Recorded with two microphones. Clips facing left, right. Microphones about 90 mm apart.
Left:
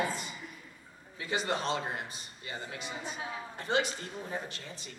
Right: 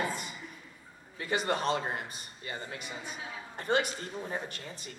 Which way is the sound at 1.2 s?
50° right (ahead or behind).